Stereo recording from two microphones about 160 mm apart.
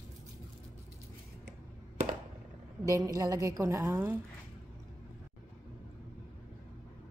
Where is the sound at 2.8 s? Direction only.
20° right (ahead or behind).